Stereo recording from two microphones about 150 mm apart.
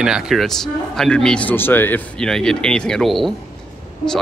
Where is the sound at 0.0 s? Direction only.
5° right (ahead or behind).